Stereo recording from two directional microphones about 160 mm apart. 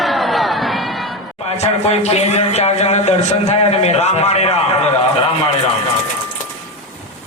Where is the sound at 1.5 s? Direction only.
40° left (ahead or behind).